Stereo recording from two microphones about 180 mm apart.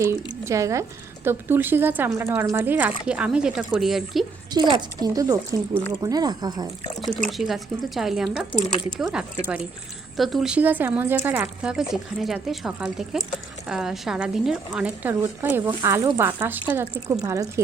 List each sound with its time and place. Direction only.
0.4 s speech: 15° right (ahead or behind); by 4.3 s centre (ahead or behind)
4.7 s speech: 20° right (ahead or behind)
7.3 s speech: centre (ahead or behind); by 17.4 s 20° right (ahead or behind)